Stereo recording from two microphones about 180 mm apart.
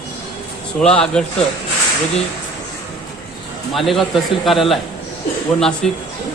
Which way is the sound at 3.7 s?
Centre (ahead or behind).